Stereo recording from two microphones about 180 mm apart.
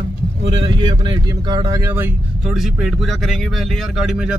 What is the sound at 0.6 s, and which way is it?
Speech, 25° right (ahead or behind).